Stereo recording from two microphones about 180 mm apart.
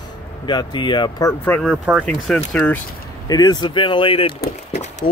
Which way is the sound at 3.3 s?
20° left (ahead or behind).